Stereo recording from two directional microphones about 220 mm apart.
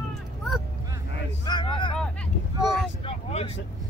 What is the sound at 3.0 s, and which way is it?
Vehicle, 30° left (ahead or behind).